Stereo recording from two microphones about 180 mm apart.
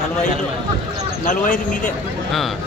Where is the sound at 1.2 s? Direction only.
45° left (ahead or behind).